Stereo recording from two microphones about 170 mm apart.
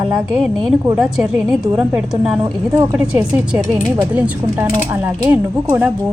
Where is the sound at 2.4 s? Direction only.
15° right (ahead or behind).